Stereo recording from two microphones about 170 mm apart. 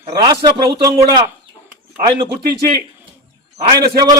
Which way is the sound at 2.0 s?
30° right (ahead or behind).